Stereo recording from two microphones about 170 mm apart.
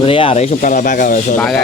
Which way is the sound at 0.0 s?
35° left (ahead or behind).